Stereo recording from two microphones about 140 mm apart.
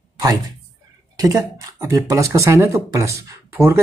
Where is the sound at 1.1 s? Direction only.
25° right (ahead or behind).